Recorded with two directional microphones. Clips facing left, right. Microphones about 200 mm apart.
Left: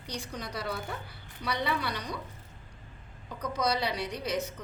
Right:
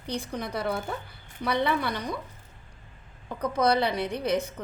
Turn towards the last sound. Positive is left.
turn(degrees=-55)  # may be behind; listen again after turning